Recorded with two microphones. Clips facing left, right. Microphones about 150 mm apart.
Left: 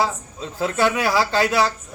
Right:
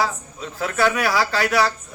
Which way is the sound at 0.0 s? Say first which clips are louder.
Left 1 dB; 25° left (ahead or behind).